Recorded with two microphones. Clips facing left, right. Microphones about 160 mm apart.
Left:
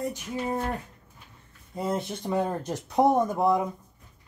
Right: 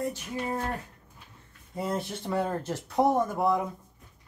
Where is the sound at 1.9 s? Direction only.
20° left (ahead or behind).